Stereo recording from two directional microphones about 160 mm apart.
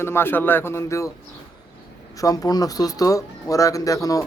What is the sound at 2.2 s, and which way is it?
Speech, 20° left (ahead or behind).